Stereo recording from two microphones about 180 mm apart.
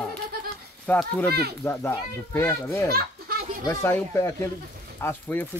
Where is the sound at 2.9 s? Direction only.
55° right (ahead or behind).